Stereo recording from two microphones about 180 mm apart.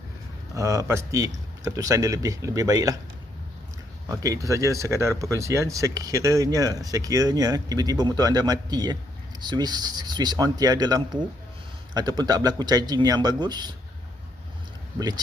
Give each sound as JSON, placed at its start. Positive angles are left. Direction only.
{"t": 0.5, "sound": "speech", "side_deg": -15}
{"t": 4.1, "sound": "speech", "side_deg": -20}
{"t": 14.9, "sound": "speech", "side_deg": -20}